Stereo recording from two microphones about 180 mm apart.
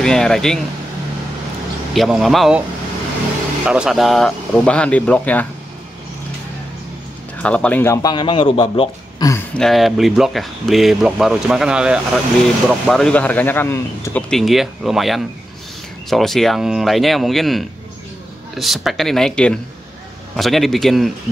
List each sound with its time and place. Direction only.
0.0 s speech: 5° left (ahead or behind)
2.0 s speech: centre (ahead or behind)
3.6 s speech: 5° right (ahead or behind)
7.4 s speech: 5° left (ahead or behind); by 8.8 s 30° left (ahead or behind)
9.2 s a sound: 20° left (ahead or behind)
9.6 s speech: centre (ahead or behind)
14.3 s speech: centre (ahead or behind)